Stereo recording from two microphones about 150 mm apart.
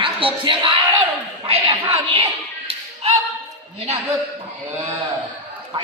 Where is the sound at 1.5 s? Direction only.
35° right (ahead or behind).